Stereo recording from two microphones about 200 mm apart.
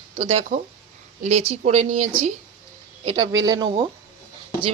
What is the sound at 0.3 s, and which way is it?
Speech, 35° right (ahead or behind).